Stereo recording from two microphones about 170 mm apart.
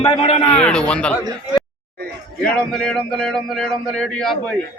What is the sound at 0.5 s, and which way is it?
Speech, 5° left (ahead or behind).